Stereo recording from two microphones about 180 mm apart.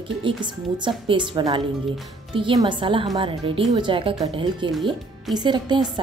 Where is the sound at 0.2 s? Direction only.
25° right (ahead or behind).